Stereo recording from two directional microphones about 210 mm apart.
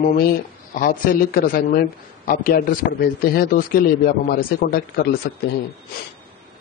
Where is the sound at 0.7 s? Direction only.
40° left (ahead or behind).